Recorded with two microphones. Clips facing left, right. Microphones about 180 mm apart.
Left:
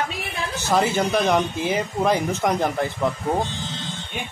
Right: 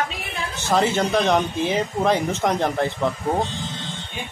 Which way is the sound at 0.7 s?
5° left (ahead or behind).